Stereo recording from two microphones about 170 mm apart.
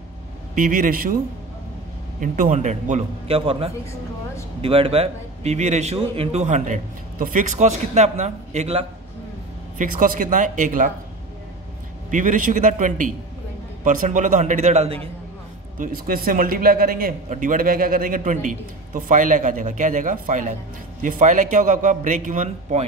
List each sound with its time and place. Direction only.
0.6 s a man's voice: 55° right (ahead or behind)
2.1 s a man's voice: 50° right (ahead or behind)
9.8 s a man's voice: 55° right (ahead or behind)
12.1 s a man's voice: 50° right (ahead or behind)
15.8 s a man's voice: 60° right (ahead or behind)